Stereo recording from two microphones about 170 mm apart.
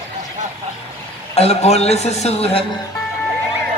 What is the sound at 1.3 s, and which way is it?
A man's voice, 40° left (ahead or behind).